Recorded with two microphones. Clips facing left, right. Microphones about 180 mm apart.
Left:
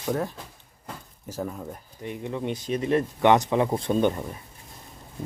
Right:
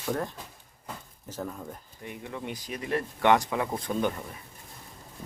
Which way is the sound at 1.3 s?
10° left (ahead or behind).